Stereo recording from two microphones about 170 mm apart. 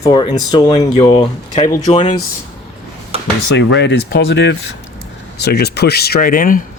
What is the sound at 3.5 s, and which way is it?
Speech, 90° left.